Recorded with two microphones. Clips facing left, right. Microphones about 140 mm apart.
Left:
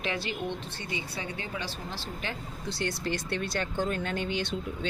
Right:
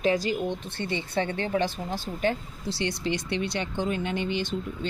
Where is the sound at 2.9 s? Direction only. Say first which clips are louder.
Right 3 dB; 50° left (ahead or behind).